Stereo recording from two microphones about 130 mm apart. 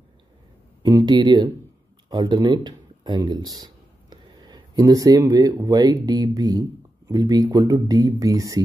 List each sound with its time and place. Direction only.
0.8 s speech: 30° right (ahead or behind)